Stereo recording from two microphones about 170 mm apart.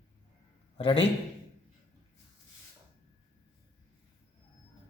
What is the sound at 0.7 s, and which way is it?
Speech, 35° left (ahead or behind).